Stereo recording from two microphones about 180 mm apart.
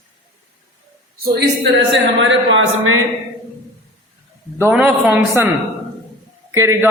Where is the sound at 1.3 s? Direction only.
70° right (ahead or behind); by 2.9 s 90° right.